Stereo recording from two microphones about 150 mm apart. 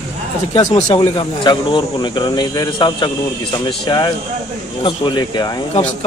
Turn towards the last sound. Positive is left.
turn(degrees=30)  # may be behind; listen again after turning